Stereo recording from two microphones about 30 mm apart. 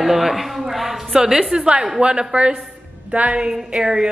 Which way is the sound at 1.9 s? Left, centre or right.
Right.